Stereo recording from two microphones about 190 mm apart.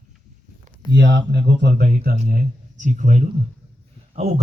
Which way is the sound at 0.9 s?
70° right (ahead or behind).